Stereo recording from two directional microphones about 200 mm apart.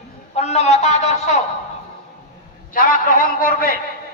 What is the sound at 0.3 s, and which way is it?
Speech, 35° left (ahead or behind).